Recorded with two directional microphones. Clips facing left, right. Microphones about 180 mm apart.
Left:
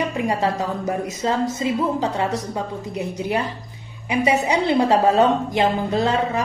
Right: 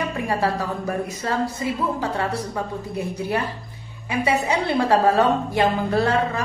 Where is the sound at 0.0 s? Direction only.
15° left (ahead or behind).